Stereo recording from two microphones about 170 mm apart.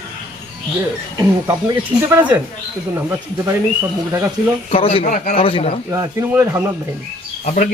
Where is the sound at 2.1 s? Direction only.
10° right (ahead or behind).